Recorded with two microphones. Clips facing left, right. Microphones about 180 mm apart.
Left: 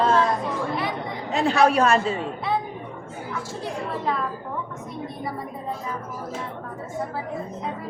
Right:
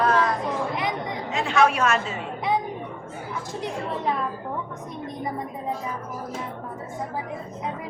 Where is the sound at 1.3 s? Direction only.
35° left (ahead or behind).